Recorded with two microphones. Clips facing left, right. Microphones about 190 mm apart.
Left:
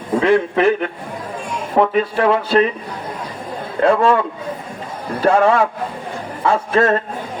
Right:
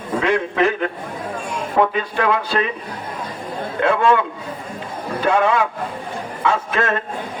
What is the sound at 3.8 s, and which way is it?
Speech, 35° left (ahead or behind).